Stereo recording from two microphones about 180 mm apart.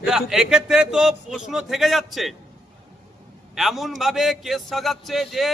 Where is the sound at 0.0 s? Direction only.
5° right (ahead or behind).